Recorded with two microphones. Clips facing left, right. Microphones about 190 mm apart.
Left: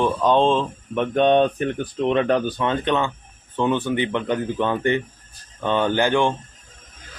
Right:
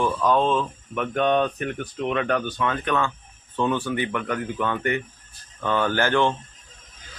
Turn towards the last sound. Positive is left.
turn(degrees=15)  # may be behind; listen again after turning